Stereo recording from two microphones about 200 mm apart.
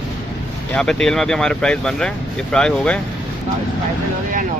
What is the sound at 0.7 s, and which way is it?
Speech, 5° left (ahead or behind).